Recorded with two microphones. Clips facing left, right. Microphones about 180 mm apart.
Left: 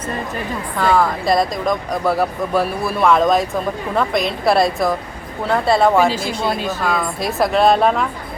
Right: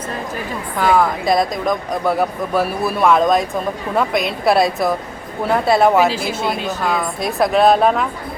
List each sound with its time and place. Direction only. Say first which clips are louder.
0.8 s speech: right 1 dB; 5° right (ahead or behind)
6.1 s speech: even; 15° right (ahead or behind)
6.9 s speech: even; centre (ahead or behind)